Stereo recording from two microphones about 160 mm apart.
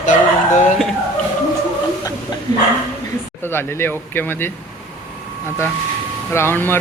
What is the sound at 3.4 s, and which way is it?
Speech, 15° left (ahead or behind).